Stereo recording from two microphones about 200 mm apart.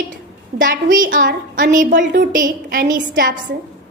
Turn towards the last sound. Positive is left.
turn(degrees=-45)  # may be behind; listen again after turning